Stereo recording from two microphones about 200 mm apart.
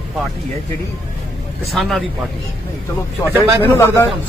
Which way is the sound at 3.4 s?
10° left (ahead or behind).